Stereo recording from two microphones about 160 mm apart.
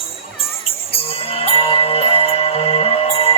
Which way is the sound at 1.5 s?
35° left (ahead or behind).